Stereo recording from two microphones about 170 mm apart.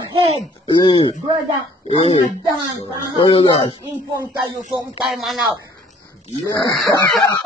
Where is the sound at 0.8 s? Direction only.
25° left (ahead or behind).